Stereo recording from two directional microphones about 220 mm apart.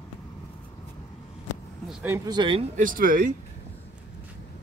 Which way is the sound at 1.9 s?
10° right (ahead or behind).